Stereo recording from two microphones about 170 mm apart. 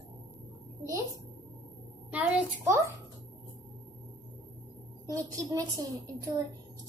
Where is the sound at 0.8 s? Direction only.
20° right (ahead or behind).